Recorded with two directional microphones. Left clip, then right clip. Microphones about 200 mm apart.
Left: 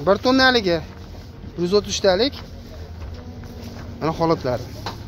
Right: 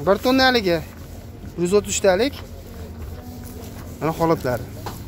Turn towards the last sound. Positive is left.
turn(degrees=-5)  # may be behind; listen again after turning